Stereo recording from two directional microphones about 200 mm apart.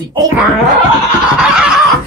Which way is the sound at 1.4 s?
5° right (ahead or behind).